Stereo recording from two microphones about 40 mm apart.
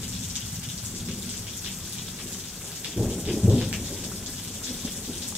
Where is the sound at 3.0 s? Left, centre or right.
Centre.